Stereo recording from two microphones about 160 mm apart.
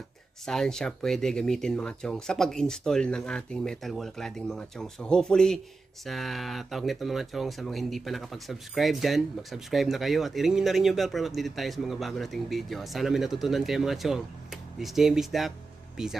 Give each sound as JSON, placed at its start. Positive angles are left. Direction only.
{"t": 0.5, "sound": "speech", "side_deg": 5}